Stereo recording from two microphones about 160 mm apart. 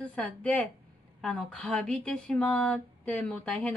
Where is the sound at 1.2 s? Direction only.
Centre (ahead or behind).